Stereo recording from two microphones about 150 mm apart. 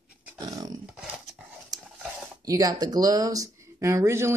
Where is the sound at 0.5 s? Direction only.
25° right (ahead or behind).